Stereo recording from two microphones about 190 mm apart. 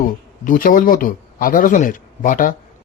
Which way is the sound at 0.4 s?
45° left (ahead or behind).